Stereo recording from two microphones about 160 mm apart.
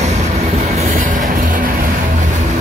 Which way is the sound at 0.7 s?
45° right (ahead or behind).